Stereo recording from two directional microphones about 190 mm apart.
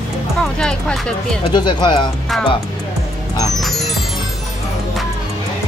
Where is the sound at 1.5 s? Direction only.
20° left (ahead or behind).